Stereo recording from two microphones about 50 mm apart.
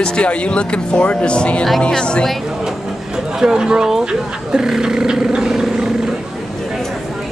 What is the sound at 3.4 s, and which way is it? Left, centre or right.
Speech, centre.